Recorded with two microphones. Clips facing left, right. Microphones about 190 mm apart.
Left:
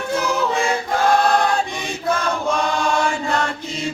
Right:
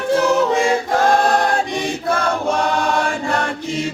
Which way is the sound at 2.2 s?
65° right (ahead or behind).